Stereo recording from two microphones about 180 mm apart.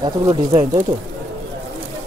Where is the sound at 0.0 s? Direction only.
25° right (ahead or behind).